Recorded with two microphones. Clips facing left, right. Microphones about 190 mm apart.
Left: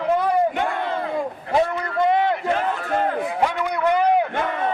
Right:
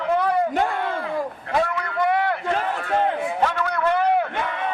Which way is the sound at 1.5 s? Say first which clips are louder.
Left 3 dB; 20° left (ahead or behind).